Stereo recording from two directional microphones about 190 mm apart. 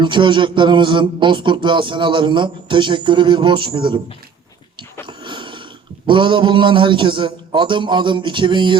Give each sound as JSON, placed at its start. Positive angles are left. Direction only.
{"t": 0.0, "sound": "a man's voice", "side_deg": -25}
{"t": 5.0, "sound": "a sound", "side_deg": -25}
{"t": 6.1, "sound": "a man's voice", "side_deg": -25}